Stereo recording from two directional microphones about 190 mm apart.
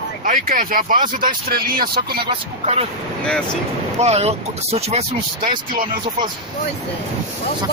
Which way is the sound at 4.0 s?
35° right (ahead or behind).